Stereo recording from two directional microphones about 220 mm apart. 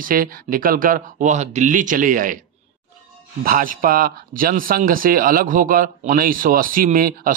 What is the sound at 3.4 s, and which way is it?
Speech, 40° right (ahead or behind).